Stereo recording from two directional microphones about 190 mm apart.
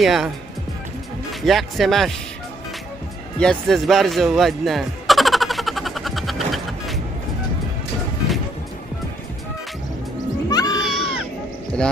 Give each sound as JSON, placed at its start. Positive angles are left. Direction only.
{"t": 0.0, "sound": "speech", "side_deg": 0}
{"t": 1.4, "sound": "speech", "side_deg": 0}
{"t": 3.3, "sound": "music", "side_deg": 5}
{"t": 10.5, "sound": "a sound", "side_deg": 20}
{"t": 10.8, "sound": "crowd", "side_deg": 0}